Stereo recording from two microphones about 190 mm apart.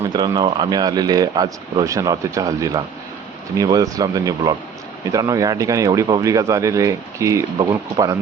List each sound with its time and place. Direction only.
0.0 s speech: 20° right (ahead or behind)